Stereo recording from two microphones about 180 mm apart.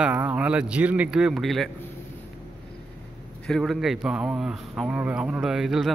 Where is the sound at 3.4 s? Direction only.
Centre (ahead or behind).